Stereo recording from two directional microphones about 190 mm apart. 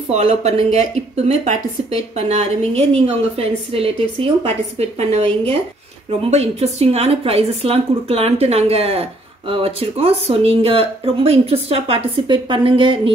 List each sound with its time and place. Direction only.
0.1 s speech: 35° right (ahead or behind)
6.3 s speech: 35° right (ahead or behind)